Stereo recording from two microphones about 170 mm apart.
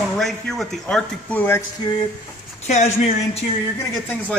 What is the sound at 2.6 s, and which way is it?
Speech, 40° left (ahead or behind).